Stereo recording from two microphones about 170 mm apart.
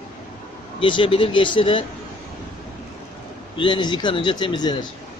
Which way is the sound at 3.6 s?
25° left (ahead or behind).